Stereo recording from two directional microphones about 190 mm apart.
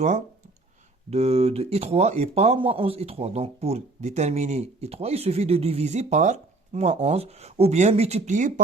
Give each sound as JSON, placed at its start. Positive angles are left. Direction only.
{"t": 1.1, "sound": "speech", "side_deg": -35}